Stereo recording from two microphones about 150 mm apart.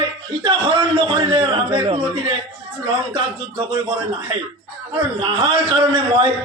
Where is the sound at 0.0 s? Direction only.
30° right (ahead or behind).